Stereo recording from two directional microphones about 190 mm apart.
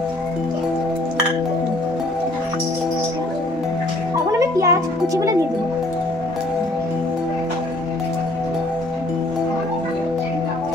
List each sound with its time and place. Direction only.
4.4 s music: 15° right (ahead or behind)